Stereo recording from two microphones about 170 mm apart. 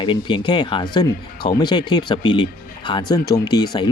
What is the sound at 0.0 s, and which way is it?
Speech, 30° left (ahead or behind).